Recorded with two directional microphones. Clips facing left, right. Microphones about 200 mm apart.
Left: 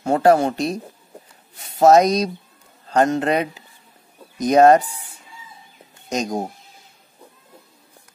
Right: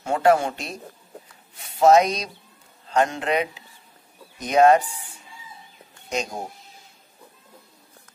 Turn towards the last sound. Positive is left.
turn(degrees=40)  # may be behind; listen again after turning